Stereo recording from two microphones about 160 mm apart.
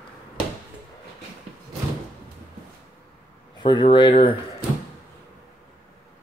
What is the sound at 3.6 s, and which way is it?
Speech, 30° left (ahead or behind).